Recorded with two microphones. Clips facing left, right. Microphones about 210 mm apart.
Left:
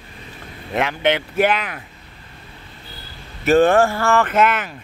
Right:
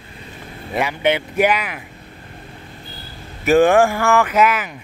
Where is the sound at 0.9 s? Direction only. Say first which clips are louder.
Right 1 dB; 10° right (ahead or behind).